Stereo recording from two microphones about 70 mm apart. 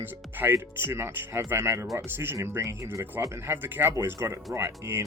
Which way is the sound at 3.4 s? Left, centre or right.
Right.